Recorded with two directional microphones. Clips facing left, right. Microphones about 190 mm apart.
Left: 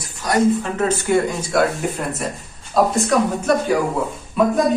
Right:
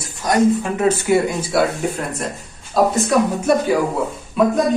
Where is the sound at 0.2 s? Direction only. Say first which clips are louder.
Right 1 dB; 15° right (ahead or behind).